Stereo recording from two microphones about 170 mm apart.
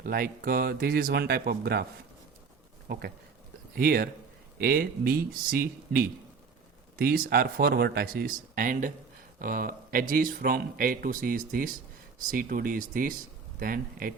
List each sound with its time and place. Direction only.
0.0 s speech: 60° right (ahead or behind)
2.9 s speech: 60° right (ahead or behind)